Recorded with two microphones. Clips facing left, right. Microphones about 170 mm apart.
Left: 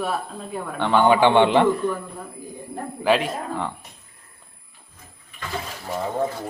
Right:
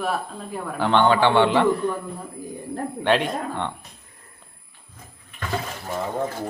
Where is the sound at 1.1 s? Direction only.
15° left (ahead or behind).